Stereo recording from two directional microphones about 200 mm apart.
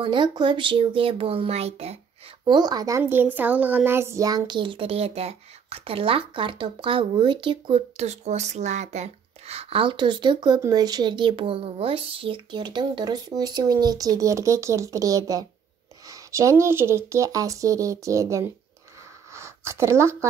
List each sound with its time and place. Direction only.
0.0 s a child's voice: 25° right (ahead or behind)
2.4 s a child's voice: 20° right (ahead or behind)
3.0 s a child's voice: 10° right (ahead or behind)